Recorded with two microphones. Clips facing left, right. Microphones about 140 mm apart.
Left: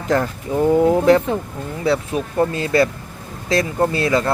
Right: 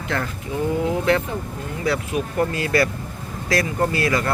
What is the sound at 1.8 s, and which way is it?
Speech, 30° left (ahead or behind).